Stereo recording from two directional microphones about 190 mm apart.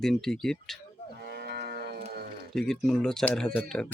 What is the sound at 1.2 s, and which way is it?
Moo, 60° right (ahead or behind).